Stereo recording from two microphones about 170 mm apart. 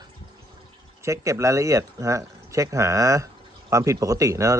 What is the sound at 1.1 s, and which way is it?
Speech, 15° right (ahead or behind).